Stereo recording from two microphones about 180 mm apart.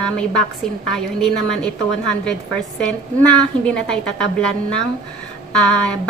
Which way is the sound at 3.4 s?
5° left (ahead or behind).